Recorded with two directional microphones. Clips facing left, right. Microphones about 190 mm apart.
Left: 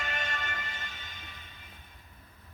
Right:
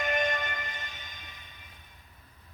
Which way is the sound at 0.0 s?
15° right (ahead or behind).